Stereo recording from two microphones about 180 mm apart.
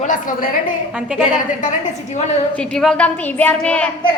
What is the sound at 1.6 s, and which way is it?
Speech, 40° left (ahead or behind).